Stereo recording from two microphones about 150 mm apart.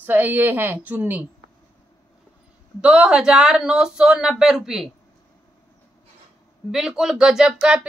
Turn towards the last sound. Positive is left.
turn(degrees=-5)  # may be behind; listen again after turning